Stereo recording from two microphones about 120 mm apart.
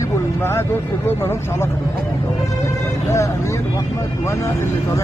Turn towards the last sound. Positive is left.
turn(degrees=25)  # may be behind; listen again after turning